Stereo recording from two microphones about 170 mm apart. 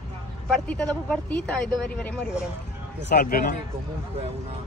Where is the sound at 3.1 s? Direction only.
60° left (ahead or behind).